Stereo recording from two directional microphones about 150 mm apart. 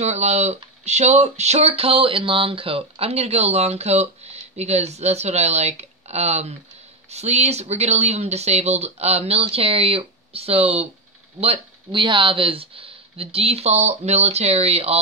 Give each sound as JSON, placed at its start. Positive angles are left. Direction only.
{"t": 0.0, "sound": "speech", "side_deg": -50}